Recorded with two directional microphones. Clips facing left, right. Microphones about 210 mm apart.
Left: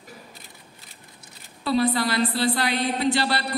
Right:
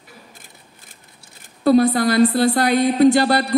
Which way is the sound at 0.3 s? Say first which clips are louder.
Even; 50° right (ahead or behind).